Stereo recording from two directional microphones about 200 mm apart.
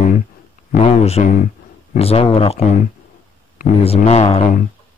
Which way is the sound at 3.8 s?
30° left (ahead or behind).